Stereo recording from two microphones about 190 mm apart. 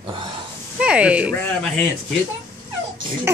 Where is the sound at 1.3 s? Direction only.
10° left (ahead or behind).